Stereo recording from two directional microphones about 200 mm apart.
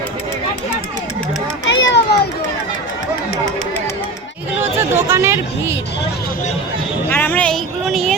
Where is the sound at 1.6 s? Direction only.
60° left (ahead or behind).